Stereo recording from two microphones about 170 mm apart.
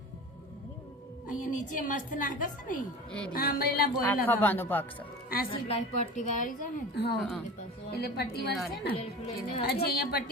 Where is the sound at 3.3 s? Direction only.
60° left (ahead or behind).